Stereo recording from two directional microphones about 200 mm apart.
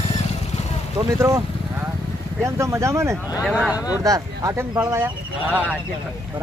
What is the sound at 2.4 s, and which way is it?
Speech, 15° right (ahead or behind).